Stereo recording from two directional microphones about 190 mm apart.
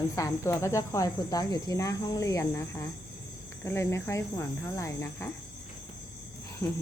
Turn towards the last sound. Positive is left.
turn(degrees=20)  # may be behind; listen again after turning